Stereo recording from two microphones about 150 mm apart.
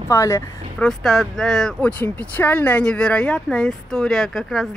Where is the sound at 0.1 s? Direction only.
20° left (ahead or behind).